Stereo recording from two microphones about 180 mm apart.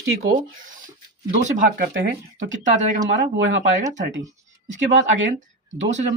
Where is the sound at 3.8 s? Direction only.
40° right (ahead or behind).